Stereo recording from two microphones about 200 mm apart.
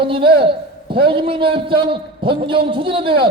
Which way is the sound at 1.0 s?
25° right (ahead or behind).